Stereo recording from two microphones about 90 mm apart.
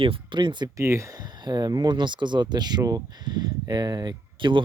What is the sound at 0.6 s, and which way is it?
Speech, 35° right (ahead or behind).